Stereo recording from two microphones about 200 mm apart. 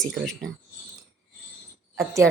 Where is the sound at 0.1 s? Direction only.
Centre (ahead or behind).